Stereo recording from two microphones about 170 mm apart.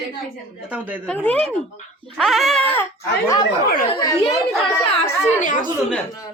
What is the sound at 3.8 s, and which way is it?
Speech, 30° left (ahead or behind).